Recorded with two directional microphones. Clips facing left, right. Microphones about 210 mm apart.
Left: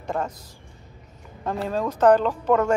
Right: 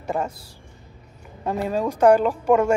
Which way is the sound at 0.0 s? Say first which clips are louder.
Right 2 dB; 10° right (ahead or behind).